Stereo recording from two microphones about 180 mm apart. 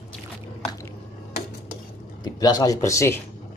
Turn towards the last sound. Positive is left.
turn(degrees=15)  # may be behind; listen again after turning